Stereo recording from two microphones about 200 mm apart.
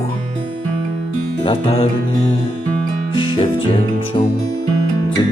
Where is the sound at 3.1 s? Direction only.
25° left (ahead or behind).